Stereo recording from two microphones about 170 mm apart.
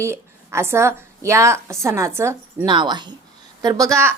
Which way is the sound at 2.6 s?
25° right (ahead or behind).